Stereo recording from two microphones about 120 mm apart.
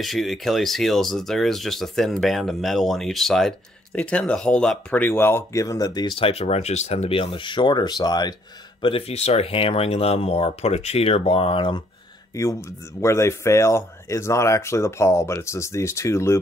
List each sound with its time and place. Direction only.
0.0 s speech: centre (ahead or behind); by 6.1 s 35° left (ahead or behind)
6.1 s speech: 55° left (ahead or behind); by 8.4 s 35° left (ahead or behind)
8.8 s speech: 55° left (ahead or behind)
12.4 s speech: 25° left (ahead or behind)